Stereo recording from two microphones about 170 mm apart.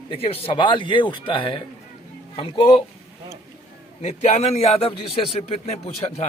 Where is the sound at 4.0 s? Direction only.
40° left (ahead or behind).